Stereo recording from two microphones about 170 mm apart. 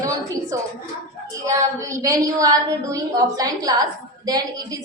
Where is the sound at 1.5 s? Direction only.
20° right (ahead or behind).